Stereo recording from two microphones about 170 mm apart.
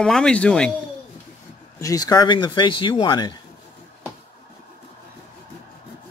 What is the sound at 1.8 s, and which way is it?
Speech, 20° left (ahead or behind).